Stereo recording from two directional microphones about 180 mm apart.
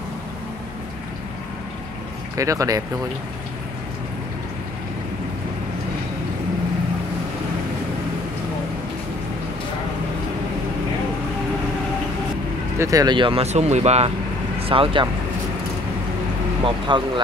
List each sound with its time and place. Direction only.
2.3 s speech: 20° right (ahead or behind)
12.7 s speech: 15° right (ahead or behind)
16.6 s speech: 25° right (ahead or behind)